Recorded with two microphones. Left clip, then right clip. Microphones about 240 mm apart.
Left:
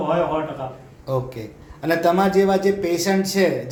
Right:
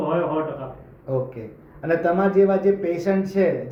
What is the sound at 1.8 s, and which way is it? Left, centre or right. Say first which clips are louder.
Speech: left 2 dB; left.